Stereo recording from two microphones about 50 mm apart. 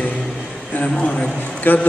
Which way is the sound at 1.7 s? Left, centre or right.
Left.